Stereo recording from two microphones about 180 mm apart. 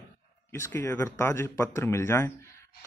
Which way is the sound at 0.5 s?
10° left (ahead or behind).